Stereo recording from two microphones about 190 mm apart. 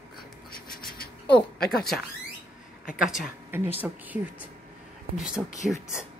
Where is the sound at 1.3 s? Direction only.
60° left (ahead or behind).